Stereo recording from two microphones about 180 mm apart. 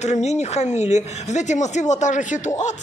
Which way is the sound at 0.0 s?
40° left (ahead or behind).